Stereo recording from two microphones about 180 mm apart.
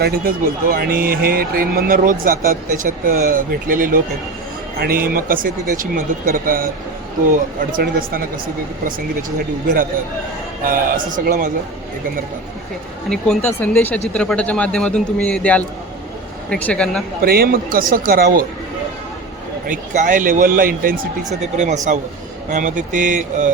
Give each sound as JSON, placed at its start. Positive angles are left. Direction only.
{"t": 0.0, "sound": "speech", "side_deg": -55}
{"t": 10.6, "sound": "speech", "side_deg": -50}
{"t": 13.1, "sound": "a man's voice", "side_deg": 10}
{"t": 17.2, "sound": "speech", "side_deg": -55}
{"t": 19.6, "sound": "speech", "side_deg": -45}